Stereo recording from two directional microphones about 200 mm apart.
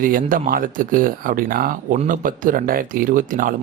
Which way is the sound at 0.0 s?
45° right (ahead or behind).